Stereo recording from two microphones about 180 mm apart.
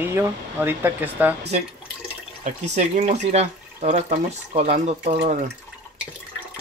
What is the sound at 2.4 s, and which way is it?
Speech, 40° right (ahead or behind).